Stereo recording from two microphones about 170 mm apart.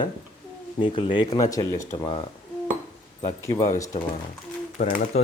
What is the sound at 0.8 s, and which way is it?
Speech, 30° left (ahead or behind).